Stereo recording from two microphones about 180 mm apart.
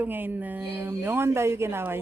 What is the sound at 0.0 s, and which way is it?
Speech, 10° right (ahead or behind).